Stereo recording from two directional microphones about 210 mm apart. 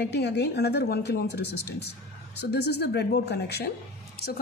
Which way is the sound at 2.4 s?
50° left (ahead or behind).